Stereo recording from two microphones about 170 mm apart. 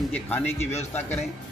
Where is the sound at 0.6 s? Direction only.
40° left (ahead or behind).